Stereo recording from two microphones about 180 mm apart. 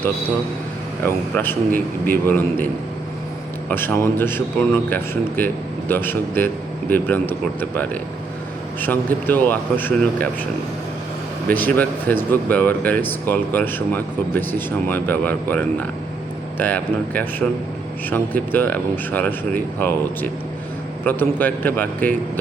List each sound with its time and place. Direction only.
1.0 s speech: 10° left (ahead or behind)
3.7 s speech: 10° left (ahead or behind)
11.4 s speech: 10° left (ahead or behind)